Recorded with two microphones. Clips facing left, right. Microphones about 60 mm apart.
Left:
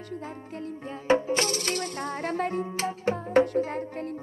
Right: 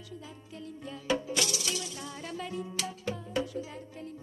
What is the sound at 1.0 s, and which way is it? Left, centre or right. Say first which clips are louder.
Music: left 7 dB; left.